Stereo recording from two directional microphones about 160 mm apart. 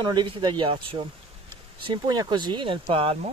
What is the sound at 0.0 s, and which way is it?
Speech, 25° right (ahead or behind).